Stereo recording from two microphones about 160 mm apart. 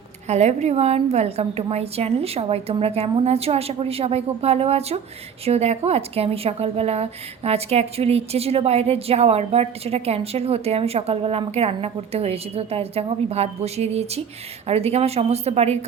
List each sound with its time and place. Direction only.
0.3 s a woman's voice: 45° right (ahead or behind)